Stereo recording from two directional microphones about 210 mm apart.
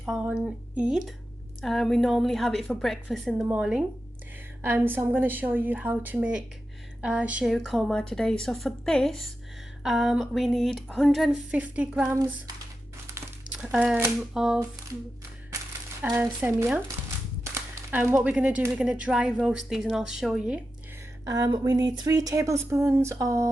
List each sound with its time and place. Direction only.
0.0 s speech: 5° right (ahead or behind)
16.0 s speech: 10° right (ahead or behind)
21.2 s speech: 15° right (ahead or behind)